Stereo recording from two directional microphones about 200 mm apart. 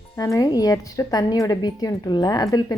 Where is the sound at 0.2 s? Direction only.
15° left (ahead or behind).